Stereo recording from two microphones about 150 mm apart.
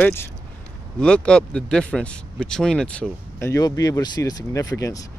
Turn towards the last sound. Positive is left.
turn(degrees=20)  # may be behind; listen again after turning